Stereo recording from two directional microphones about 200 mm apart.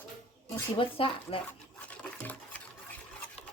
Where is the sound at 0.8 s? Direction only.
25° left (ahead or behind).